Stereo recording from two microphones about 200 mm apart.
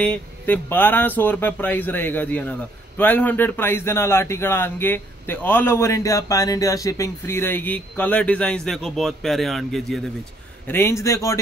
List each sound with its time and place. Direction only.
0.0 s speech: 5° left (ahead or behind)
10.7 s speech: 15° left (ahead or behind)